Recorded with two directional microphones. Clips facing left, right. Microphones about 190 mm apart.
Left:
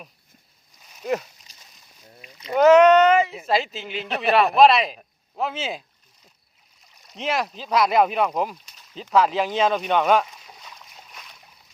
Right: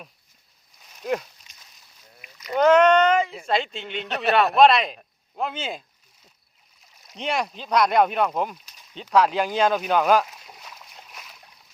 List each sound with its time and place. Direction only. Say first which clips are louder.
0.8 s a sound: left 1 dB; centre (ahead or behind)
2.2 s rowboat: left 2 dB; 25° left (ahead or behind)
2.6 s speech: left 3 dB; 5° left (ahead or behind)
7.1 s speech: left 1 dB; centre (ahead or behind)
9.0 s rowboat: even; centre (ahead or behind)